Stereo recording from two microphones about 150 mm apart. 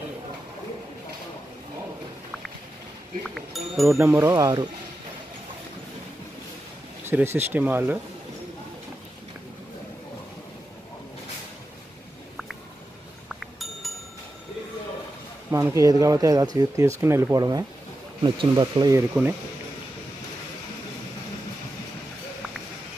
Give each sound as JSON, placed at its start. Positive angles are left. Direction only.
{"t": 3.3, "sound": "speech", "side_deg": 0}
{"t": 3.9, "sound": "speech", "side_deg": -15}
{"t": 7.1, "sound": "speech", "side_deg": -15}
{"t": 13.3, "sound": "a sound", "side_deg": 0}
{"t": 15.5, "sound": "speech", "side_deg": -20}